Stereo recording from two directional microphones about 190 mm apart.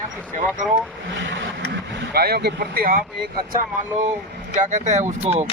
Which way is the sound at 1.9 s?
60° right (ahead or behind).